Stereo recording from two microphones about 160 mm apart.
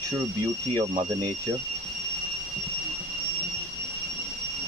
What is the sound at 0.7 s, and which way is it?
Speech, 20° right (ahead or behind).